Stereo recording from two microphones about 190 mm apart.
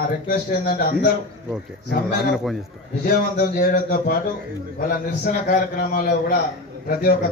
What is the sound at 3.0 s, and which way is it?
A man's voice, 50° left (ahead or behind).